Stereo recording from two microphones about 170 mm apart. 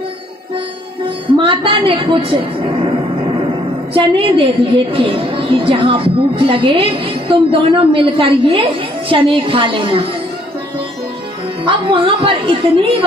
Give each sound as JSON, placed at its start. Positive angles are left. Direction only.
{"t": 1.4, "sound": "a woman's voice", "side_deg": -30}
{"t": 11.6, "sound": "a woman's voice", "side_deg": -30}